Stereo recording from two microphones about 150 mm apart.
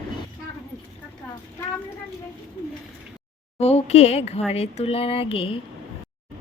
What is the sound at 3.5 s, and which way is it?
A woman's voice, 45° left (ahead or behind).